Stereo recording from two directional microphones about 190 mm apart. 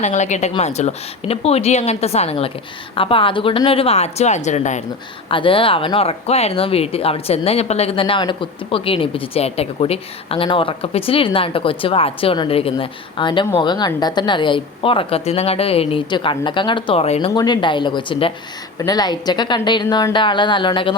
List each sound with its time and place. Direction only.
0.0 s speech: 40° left (ahead or behind)
5.3 s speech: 30° left (ahead or behind)